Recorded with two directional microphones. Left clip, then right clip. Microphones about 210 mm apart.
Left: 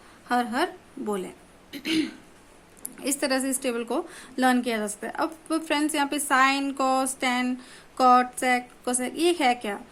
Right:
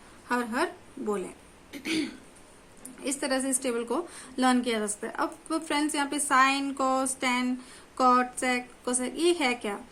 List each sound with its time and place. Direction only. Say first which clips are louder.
0.3 s a woman's voice: left 3 dB; 25° left (ahead or behind)